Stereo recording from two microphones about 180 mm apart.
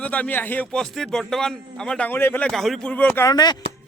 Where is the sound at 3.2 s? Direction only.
20° left (ahead or behind).